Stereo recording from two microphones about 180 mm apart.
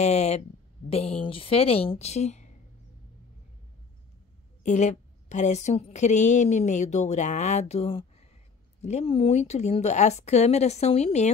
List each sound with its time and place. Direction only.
0.0 s a woman's voice: 40° left (ahead or behind)
4.6 s a woman's voice: 40° left (ahead or behind)